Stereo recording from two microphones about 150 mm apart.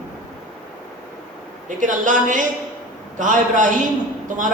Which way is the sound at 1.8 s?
60° right (ahead or behind).